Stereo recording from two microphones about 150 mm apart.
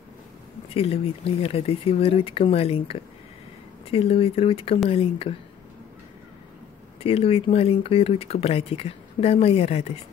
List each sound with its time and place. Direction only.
0.7 s speech: 40° left (ahead or behind)
7.0 s speech: 40° left (ahead or behind)